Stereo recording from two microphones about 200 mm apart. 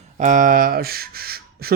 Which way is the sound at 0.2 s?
40° right (ahead or behind).